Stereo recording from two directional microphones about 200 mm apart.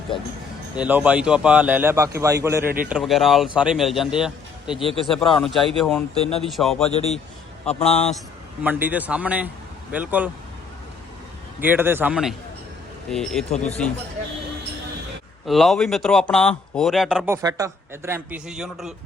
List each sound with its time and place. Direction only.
0.8 s speech: 5° right (ahead or behind)
2.6 s speech: 45° right (ahead or behind)
2.9 s speech: centre (ahead or behind)
8.6 s speech: 10° right (ahead or behind)
11.6 s speech: 10° right (ahead or behind)
13.5 s speech: 35° left (ahead or behind)
15.4 s speech: centre (ahead or behind)